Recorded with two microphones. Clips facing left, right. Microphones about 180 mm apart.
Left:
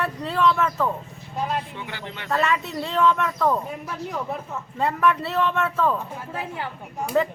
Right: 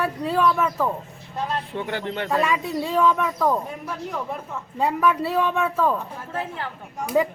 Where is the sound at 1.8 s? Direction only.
50° right (ahead or behind).